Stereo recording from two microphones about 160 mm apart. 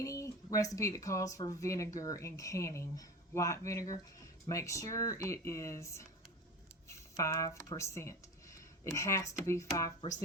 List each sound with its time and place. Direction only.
0.0 s speech: 20° left (ahead or behind)